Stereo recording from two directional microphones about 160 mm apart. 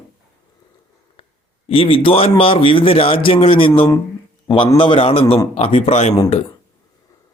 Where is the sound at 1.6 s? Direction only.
35° left (ahead or behind).